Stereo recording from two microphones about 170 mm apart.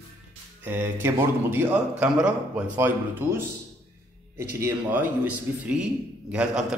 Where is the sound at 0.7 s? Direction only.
10° right (ahead or behind).